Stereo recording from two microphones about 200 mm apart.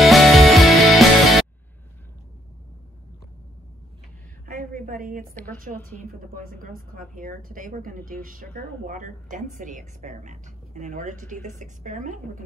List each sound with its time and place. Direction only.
0.0 s music: centre (ahead or behind)
4.5 s a sound: 45° right (ahead or behind)
5.6 s a woman's voice: 40° right (ahead or behind)